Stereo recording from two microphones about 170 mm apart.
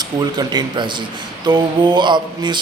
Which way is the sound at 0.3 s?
25° right (ahead or behind).